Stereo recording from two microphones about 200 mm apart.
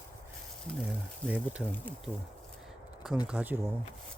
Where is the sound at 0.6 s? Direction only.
Centre (ahead or behind).